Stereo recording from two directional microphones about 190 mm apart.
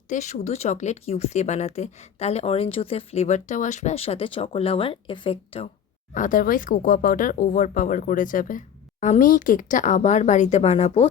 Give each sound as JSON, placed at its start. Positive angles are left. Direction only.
{"t": 0.1, "sound": "speech", "side_deg": 40}
{"t": 6.1, "sound": "speech", "side_deg": 45}